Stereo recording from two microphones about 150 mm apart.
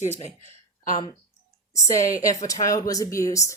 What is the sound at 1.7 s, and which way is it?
Speech, 20° left (ahead or behind).